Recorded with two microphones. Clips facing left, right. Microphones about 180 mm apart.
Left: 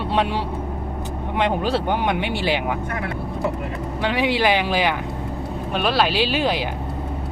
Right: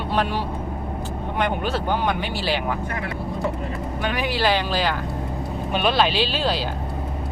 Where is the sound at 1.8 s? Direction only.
20° left (ahead or behind).